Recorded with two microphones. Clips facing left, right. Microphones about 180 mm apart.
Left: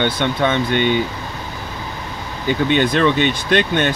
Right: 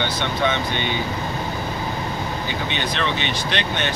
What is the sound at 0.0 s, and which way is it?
Speech, 50° left (ahead or behind).